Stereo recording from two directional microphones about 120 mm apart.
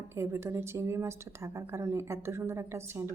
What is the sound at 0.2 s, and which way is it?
A woman's voice, 20° right (ahead or behind).